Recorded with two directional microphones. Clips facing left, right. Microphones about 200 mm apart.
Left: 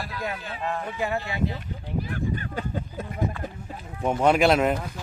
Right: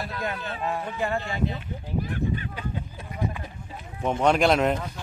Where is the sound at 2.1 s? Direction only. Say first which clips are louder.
Even; 45° left (ahead or behind).